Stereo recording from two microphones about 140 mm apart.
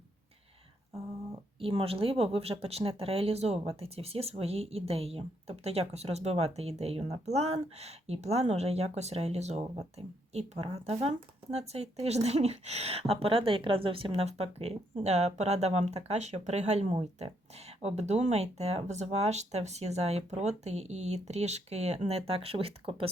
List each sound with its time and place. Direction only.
1.5 s speech: 45° right (ahead or behind)